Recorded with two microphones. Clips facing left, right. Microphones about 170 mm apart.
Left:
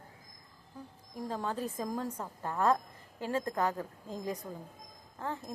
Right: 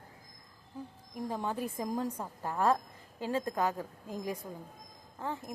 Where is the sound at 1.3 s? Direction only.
15° right (ahead or behind).